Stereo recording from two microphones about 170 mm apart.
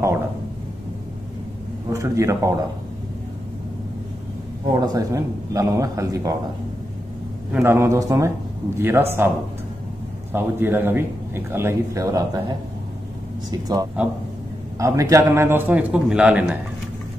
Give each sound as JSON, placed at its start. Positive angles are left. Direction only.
{"t": 1.9, "sound": "a man's voice", "side_deg": -20}
{"t": 4.7, "sound": "a man's voice", "side_deg": -20}
{"t": 7.5, "sound": "a man's voice", "side_deg": -15}
{"t": 10.3, "sound": "a man's voice", "side_deg": -10}